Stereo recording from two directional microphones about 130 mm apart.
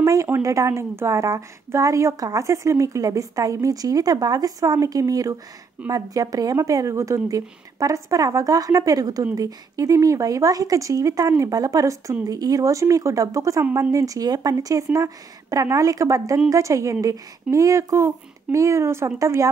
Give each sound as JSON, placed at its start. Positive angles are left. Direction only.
{"t": 0.0, "sound": "speech", "side_deg": -25}